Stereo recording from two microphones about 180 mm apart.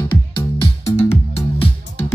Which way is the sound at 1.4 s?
35° left (ahead or behind).